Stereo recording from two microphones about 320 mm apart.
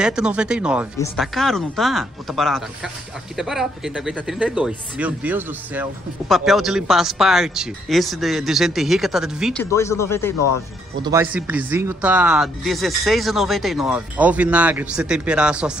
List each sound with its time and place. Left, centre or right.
0.0 s speech: centre
10.3 s speech: left
11.0 s speech: centre